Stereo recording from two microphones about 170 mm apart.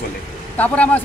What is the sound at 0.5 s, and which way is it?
Speech, 10° left (ahead or behind).